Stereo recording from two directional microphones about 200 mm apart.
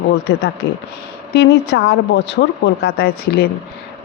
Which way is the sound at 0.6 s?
55° left (ahead or behind).